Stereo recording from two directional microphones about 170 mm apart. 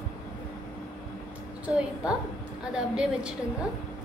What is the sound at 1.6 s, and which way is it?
A woman's voice, 5° right (ahead or behind).